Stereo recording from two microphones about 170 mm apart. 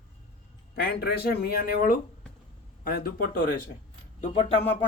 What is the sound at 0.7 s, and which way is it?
Speech, 70° left (ahead or behind).